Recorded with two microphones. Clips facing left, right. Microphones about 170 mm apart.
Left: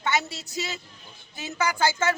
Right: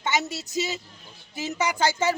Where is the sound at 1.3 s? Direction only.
20° right (ahead or behind).